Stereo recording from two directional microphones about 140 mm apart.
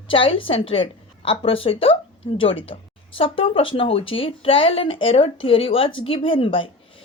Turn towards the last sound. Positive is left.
turn(degrees=40)  # may be behind; listen again after turning